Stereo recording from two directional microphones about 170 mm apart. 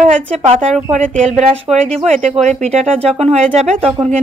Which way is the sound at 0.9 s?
45° right (ahead or behind).